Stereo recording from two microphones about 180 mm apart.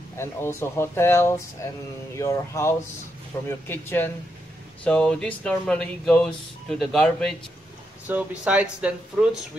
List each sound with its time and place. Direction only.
0.2 s speech: 15° left (ahead or behind)
8.1 s speech: 10° right (ahead or behind)